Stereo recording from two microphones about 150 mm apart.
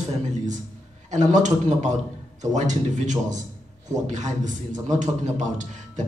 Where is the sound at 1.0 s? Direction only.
55° right (ahead or behind).